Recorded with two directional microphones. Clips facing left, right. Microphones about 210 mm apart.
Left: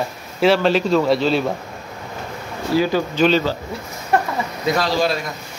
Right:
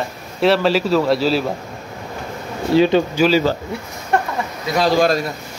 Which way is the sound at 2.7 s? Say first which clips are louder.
Right 4 dB; 25° right (ahead or behind).